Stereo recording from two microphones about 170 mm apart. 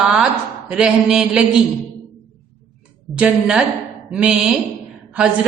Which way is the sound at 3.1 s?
5° right (ahead or behind).